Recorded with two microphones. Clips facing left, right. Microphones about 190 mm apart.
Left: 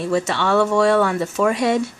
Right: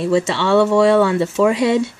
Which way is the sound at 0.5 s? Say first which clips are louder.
Right 4 dB; 5° right (ahead or behind).